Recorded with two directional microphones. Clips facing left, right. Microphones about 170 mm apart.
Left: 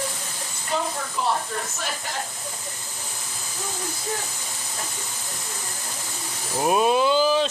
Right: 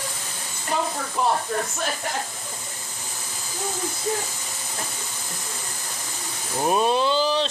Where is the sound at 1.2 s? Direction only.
50° right (ahead or behind).